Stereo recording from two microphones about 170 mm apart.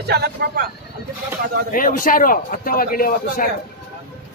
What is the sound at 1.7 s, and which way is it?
Speech, 55° left (ahead or behind).